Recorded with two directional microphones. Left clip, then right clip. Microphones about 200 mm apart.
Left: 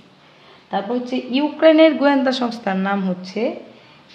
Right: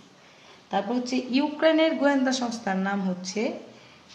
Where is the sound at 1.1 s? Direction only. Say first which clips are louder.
Left 5 dB; 20° left (ahead or behind).